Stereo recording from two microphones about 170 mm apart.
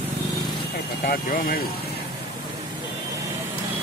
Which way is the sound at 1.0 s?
55° left (ahead or behind).